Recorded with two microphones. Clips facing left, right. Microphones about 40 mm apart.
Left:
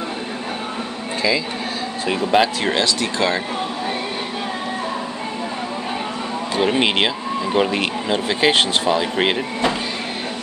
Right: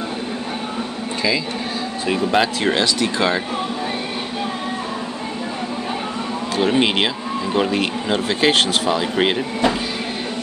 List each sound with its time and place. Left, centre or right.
2.0 s speech: centre
6.5 s speech: centre